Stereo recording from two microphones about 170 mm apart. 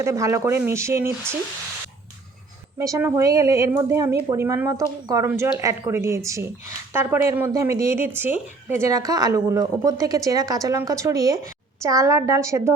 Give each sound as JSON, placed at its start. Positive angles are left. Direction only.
{"t": 0.0, "sound": "a woman's voice", "side_deg": -15}
{"t": 2.7, "sound": "a woman's voice", "side_deg": -15}